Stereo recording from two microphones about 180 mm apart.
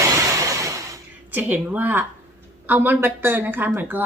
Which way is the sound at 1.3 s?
10° right (ahead or behind).